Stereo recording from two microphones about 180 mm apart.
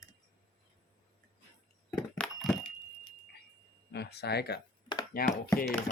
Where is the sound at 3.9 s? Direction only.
65° left (ahead or behind).